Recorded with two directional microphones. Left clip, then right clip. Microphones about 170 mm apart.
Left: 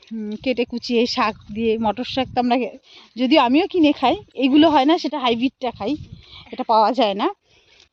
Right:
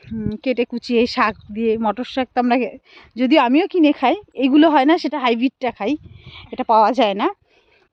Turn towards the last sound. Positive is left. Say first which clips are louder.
# right 2 dB
turn(degrees=0)  # may be behind; listen again after turning